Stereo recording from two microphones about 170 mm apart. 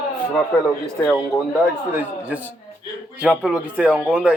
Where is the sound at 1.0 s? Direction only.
15° left (ahead or behind).